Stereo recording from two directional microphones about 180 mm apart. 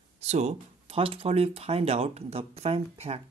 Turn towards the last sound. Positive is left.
turn(degrees=-35)  # may be behind; listen again after turning